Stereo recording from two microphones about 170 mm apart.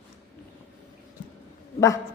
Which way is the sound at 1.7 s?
20° left (ahead or behind).